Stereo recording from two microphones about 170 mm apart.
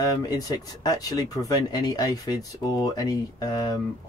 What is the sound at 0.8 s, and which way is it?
Speech, 20° left (ahead or behind).